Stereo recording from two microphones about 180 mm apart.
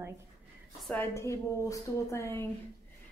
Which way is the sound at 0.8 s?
10° left (ahead or behind).